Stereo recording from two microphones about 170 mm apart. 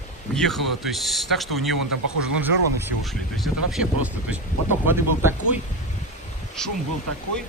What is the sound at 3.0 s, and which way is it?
Speech, centre (ahead or behind).